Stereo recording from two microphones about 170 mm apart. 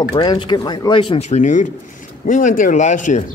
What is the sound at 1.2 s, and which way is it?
Speech, 45° left (ahead or behind).